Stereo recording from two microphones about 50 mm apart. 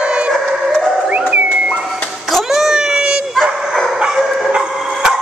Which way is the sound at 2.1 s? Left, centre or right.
Centre.